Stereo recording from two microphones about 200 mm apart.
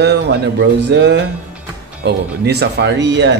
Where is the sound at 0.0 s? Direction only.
60° right (ahead or behind).